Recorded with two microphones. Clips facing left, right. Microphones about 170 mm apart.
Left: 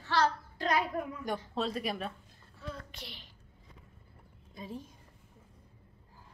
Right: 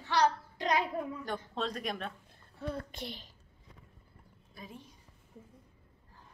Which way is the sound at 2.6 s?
55° right (ahead or behind).